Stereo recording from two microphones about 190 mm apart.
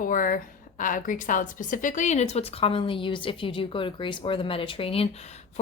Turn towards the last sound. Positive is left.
turn(degrees=30)  # may be behind; listen again after turning